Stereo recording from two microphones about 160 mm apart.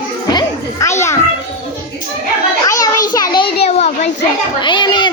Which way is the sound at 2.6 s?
20° left (ahead or behind).